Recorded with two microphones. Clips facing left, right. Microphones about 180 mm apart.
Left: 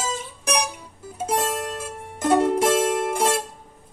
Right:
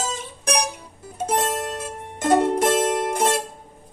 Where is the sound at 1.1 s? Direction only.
5° left (ahead or behind).